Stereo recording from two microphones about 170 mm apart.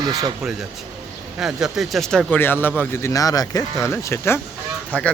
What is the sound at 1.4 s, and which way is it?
Speech, centre (ahead or behind).